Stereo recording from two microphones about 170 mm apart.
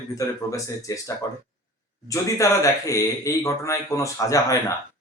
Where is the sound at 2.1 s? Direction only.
20° left (ahead or behind).